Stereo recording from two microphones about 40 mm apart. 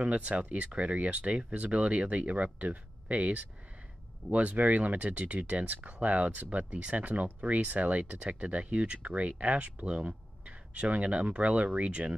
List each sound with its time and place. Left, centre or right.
0.0 s speech: right